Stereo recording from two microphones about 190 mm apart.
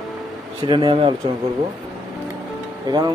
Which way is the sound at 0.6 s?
25° right (ahead or behind).